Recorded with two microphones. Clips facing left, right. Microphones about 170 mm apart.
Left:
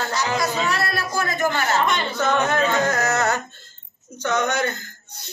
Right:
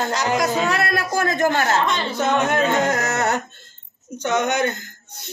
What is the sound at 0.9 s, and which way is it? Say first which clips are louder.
Speech: right 4 dB; 45° right (ahead or behind).